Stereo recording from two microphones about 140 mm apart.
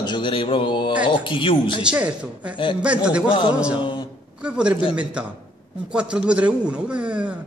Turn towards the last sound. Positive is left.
turn(degrees=-10)  # may be behind; listen again after turning